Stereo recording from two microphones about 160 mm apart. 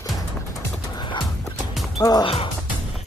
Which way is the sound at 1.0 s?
30° left (ahead or behind).